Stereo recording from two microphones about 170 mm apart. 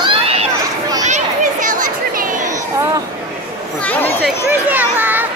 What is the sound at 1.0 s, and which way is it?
Chatter, 45° right (ahead or behind).